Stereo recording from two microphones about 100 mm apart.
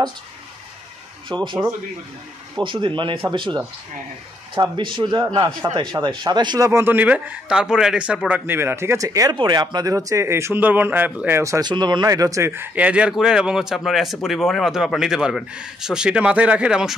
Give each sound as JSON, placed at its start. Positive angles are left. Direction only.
{"t": 1.3, "sound": "speech", "side_deg": -50}
{"t": 6.7, "sound": "speech", "side_deg": -20}
{"t": 7.4, "sound": "a man's voice", "side_deg": -5}
{"t": 8.5, "sound": "speech", "side_deg": -25}
{"t": 9.4, "sound": "speech", "side_deg": -50}
{"t": 11.3, "sound": "speech", "side_deg": -30}
{"t": 11.6, "sound": "speech", "side_deg": -50}
{"t": 12.7, "sound": "a man's voice", "side_deg": -15}